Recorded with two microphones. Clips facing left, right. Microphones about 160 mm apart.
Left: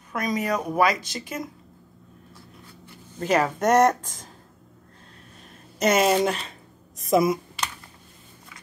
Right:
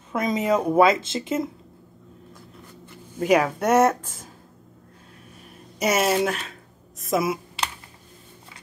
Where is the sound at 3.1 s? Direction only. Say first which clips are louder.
Right 3 dB; 10° right (ahead or behind).